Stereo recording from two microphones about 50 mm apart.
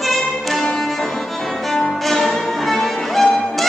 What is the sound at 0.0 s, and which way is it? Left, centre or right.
Music, centre.